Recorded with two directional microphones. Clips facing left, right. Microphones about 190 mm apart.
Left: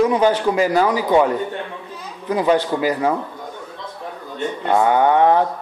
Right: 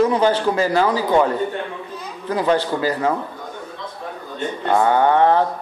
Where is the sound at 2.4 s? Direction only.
15° left (ahead or behind).